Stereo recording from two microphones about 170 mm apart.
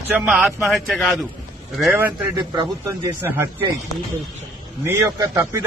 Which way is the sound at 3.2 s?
15° right (ahead or behind).